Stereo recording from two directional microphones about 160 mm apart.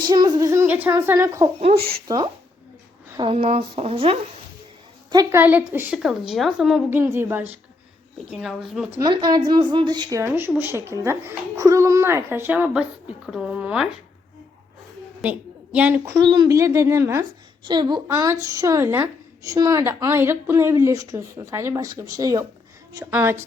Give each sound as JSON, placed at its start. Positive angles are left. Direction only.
{"t": 0.1, "sound": "speech", "side_deg": -25}
{"t": 1.7, "sound": "speech", "side_deg": -70}
{"t": 2.0, "sound": "speech", "side_deg": -25}
{"t": 5.1, "sound": "a woman's voice", "side_deg": -20}
{"t": 6.9, "sound": "a woman's voice", "side_deg": -15}
{"t": 8.2, "sound": "a woman's voice", "side_deg": 0}
{"t": 9.0, "sound": "a woman's voice", "side_deg": -25}
{"t": 15.2, "sound": "a woman's voice", "side_deg": -10}
{"t": 16.1, "sound": "speech", "side_deg": -25}
{"t": 17.6, "sound": "a woman's voice", "side_deg": -30}